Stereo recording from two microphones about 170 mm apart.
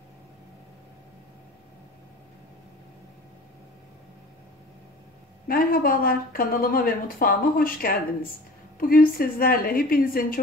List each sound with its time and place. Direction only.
5.5 s speech: 60° left (ahead or behind)